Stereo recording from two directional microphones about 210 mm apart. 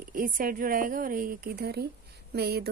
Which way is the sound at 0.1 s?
40° right (ahead or behind).